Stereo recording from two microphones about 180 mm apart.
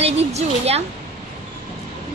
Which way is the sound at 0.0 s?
35° right (ahead or behind).